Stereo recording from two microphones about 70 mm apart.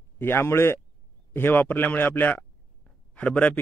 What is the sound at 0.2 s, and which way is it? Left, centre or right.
Speech, left.